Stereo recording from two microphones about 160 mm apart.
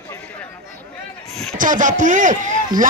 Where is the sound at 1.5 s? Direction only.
55° right (ahead or behind).